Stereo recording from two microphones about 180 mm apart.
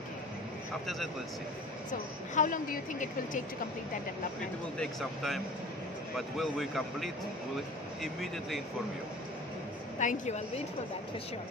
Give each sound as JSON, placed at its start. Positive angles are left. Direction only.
{"t": 0.8, "sound": "speech", "side_deg": 0}
{"t": 1.9, "sound": "a woman's voice", "side_deg": 45}
{"t": 4.7, "sound": "speech", "side_deg": 0}
{"t": 9.9, "sound": "a woman's voice", "side_deg": 40}